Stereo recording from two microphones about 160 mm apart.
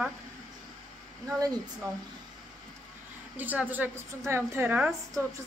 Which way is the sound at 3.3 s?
10° right (ahead or behind).